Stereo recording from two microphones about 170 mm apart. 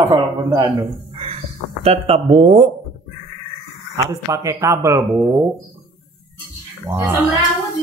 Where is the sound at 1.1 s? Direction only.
35° right (ahead or behind).